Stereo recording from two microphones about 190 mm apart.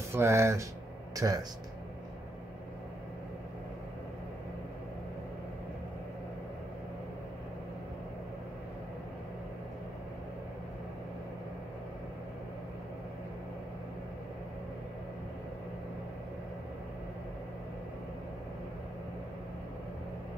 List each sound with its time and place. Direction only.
0.1 s speech: 15° right (ahead or behind)